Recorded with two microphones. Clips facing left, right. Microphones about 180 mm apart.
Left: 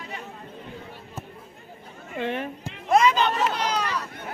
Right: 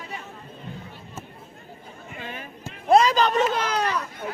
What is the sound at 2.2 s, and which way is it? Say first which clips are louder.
Speech: left 10 dB; 70° left (ahead or behind).